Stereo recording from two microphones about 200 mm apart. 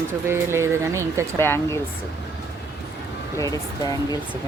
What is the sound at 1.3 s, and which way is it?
Speech, 10° left (ahead or behind).